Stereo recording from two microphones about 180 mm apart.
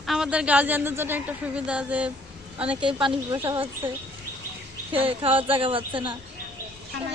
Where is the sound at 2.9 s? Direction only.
25° right (ahead or behind).